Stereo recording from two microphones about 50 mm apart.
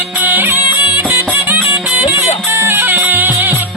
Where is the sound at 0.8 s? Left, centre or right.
Right.